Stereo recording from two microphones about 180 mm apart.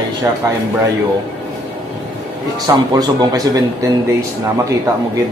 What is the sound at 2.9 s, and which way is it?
Speech, 20° right (ahead or behind).